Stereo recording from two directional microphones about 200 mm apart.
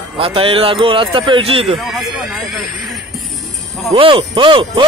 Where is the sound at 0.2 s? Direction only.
25° right (ahead or behind).